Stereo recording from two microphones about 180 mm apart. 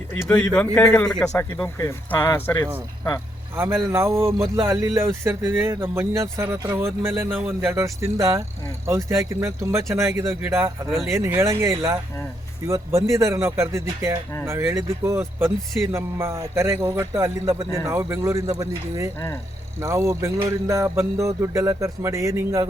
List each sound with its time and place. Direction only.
0.5 s a man's voice: 10° left (ahead or behind)
3.5 s speech: 10° right (ahead or behind)